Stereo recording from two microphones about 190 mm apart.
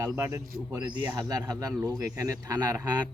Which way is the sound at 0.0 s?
15° right (ahead or behind).